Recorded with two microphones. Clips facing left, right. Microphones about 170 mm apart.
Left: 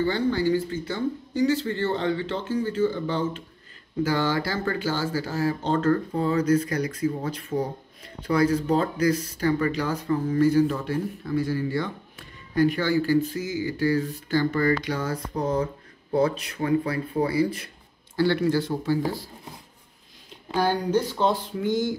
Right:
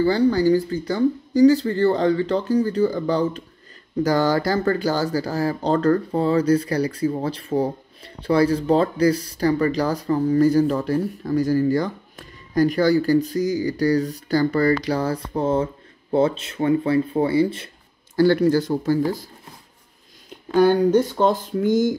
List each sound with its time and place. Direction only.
0.0 s speech: 35° right (ahead or behind)
18.1 s speech: 40° right (ahead or behind)
20.5 s speech: 50° right (ahead or behind)